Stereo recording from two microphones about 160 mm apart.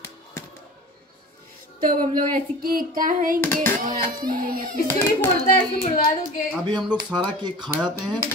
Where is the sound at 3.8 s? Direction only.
65° right (ahead or behind).